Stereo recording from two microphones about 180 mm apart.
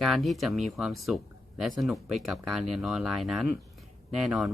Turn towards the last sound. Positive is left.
turn(degrees=0)  # may be behind; listen again after turning